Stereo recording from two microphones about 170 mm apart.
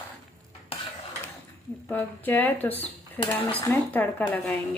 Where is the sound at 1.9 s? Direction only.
10° left (ahead or behind).